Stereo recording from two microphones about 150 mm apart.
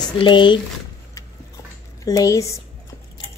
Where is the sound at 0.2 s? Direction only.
30° left (ahead or behind).